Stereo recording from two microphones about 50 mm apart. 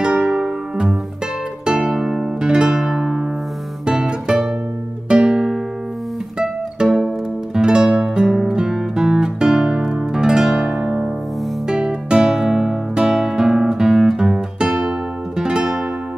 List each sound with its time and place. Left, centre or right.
0.0 s music: centre
2.4 s music: centre
8.4 s guitar: centre
11.6 s music: centre
12.9 s guitar: centre